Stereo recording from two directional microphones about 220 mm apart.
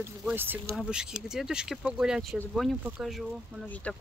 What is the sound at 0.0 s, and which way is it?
Speech, 10° right (ahead or behind).